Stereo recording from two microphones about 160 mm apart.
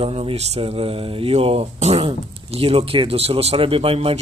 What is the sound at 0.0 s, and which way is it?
Speech, 35° right (ahead or behind).